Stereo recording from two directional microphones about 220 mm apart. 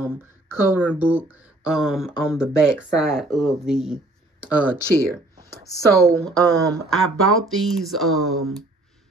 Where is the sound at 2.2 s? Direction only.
10° left (ahead or behind).